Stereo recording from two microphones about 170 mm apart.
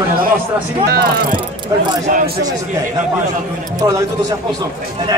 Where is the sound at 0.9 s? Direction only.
60° right (ahead or behind).